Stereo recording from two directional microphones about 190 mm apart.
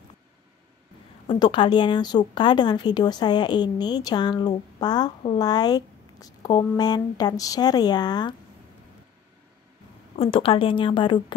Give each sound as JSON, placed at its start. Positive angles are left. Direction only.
{"t": 1.2, "sound": "speech", "side_deg": 25}
{"t": 10.1, "sound": "speech", "side_deg": 30}